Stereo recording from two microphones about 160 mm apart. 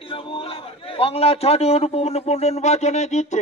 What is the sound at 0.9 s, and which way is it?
Speech, 40° left (ahead or behind).